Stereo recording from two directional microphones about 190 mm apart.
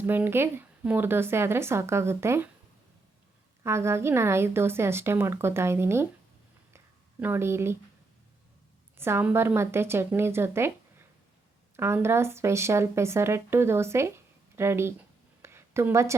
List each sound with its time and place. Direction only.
0.0 s a woman's voice: 10° right (ahead or behind)
3.6 s a woman's voice: 15° right (ahead or behind)
6.7 s a sound: 10° right (ahead or behind)
9.0 s a woman's voice: 10° right (ahead or behind)
11.8 s a woman's voice: 15° right (ahead or behind)
14.5 s a sound: 15° right (ahead or behind)